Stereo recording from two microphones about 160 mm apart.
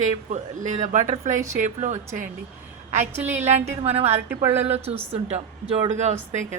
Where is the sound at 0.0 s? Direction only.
50° right (ahead or behind).